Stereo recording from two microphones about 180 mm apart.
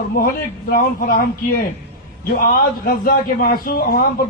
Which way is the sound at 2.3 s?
55° left (ahead or behind).